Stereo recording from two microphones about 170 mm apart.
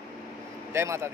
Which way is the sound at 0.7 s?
15° right (ahead or behind).